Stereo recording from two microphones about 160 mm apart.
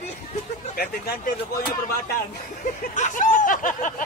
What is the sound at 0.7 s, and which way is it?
Speech, 70° left (ahead or behind).